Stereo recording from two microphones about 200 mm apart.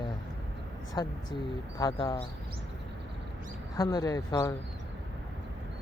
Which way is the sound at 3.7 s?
20° left (ahead or behind).